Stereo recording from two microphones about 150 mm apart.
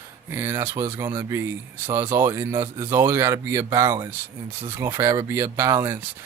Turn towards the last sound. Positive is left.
turn(degrees=-15)  # may be behind; listen again after turning